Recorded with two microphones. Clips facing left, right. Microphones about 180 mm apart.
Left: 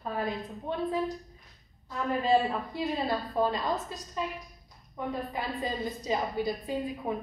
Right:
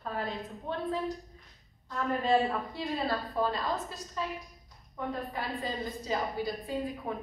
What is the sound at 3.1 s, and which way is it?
A woman's voice, 20° left (ahead or behind).